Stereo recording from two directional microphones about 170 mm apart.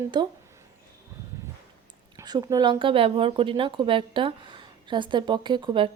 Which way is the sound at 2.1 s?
20° right (ahead or behind).